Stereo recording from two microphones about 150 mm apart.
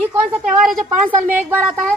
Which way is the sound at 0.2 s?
Centre (ahead or behind).